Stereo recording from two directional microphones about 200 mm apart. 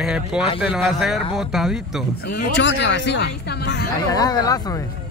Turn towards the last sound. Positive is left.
turn(degrees=20)  # may be behind; listen again after turning